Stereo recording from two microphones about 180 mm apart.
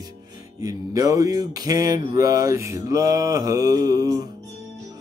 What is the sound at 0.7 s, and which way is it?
Speech, 20° right (ahead or behind).